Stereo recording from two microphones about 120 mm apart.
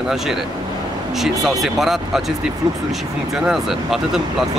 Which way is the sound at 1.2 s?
Centre (ahead or behind).